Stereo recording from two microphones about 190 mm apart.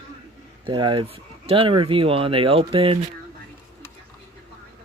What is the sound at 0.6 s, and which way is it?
Speech, 25° right (ahead or behind).